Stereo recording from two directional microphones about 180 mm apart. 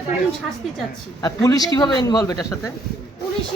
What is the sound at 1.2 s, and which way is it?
Speech, 20° left (ahead or behind).